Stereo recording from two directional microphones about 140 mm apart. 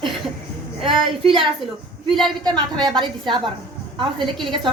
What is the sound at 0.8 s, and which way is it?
A woman's voice, 35° right (ahead or behind).